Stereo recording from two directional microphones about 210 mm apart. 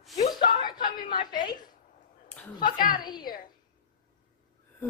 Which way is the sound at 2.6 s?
40° left (ahead or behind).